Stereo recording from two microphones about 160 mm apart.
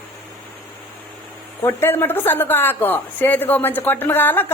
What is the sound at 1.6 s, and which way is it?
A woman's voice, 15° left (ahead or behind).